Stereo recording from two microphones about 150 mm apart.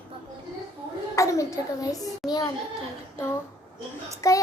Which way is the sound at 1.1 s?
20° left (ahead or behind).